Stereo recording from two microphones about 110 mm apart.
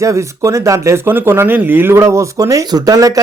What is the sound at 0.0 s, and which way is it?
Speech, 30° right (ahead or behind).